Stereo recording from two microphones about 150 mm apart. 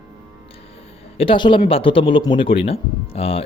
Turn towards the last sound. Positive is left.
turn(degrees=40)  # may be behind; listen again after turning